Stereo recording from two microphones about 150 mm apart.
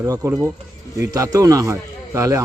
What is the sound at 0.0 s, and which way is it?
A man's voice, 20° right (ahead or behind).